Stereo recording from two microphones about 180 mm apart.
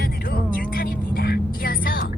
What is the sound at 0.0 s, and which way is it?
Vehicle, 55° left (ahead or behind).